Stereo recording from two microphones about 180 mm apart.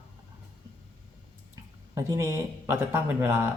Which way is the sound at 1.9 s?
15° right (ahead or behind).